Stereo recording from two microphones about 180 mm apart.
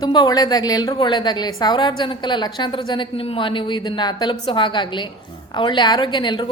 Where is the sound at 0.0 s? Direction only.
20° left (ahead or behind).